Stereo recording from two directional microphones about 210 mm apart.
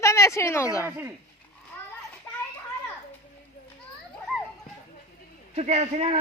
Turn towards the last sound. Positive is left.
turn(degrees=-30)  # may be behind; listen again after turning